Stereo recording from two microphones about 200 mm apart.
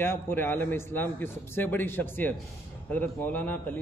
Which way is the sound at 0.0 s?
10° left (ahead or behind).